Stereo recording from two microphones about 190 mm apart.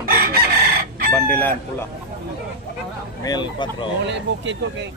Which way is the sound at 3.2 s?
25° left (ahead or behind).